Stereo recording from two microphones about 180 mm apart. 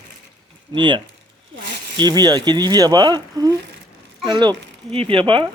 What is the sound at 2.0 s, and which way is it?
Speech, 25° right (ahead or behind).